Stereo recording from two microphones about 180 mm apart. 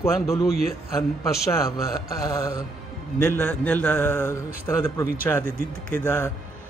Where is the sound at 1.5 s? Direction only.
20° left (ahead or behind).